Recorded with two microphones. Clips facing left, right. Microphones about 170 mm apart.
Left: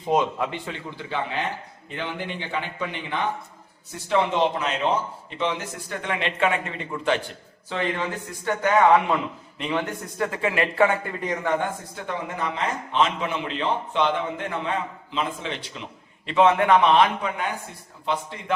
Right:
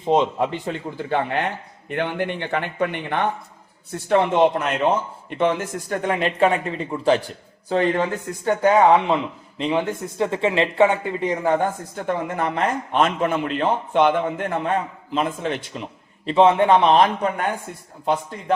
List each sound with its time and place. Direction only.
0.0 s a man's voice: 25° right (ahead or behind)
0.5 s a man's voice: 40° right (ahead or behind); by 11.5 s 25° right (ahead or behind)
11.9 s a man's voice: 50° right (ahead or behind)